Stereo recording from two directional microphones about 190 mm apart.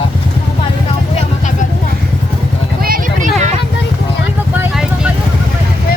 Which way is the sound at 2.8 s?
50° right (ahead or behind).